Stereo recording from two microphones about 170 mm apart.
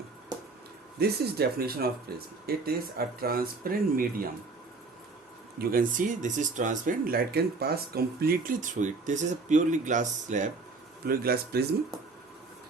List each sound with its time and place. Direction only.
0.9 s speech: 70° right (ahead or behind)
5.5 s speech: 55° right (ahead or behind)
11.0 s speech: 60° right (ahead or behind)